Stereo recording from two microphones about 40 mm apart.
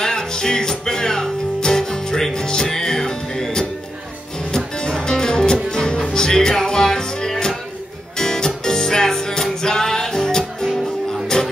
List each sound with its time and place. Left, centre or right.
0.0 s music: centre